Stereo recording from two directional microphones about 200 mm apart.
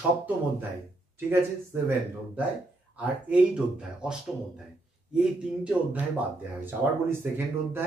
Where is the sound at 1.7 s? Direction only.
10° right (ahead or behind).